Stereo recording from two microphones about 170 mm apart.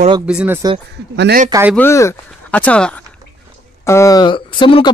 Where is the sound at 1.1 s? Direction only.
85° right.